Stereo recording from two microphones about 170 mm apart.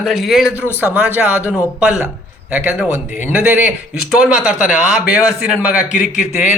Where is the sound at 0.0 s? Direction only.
Centre (ahead or behind).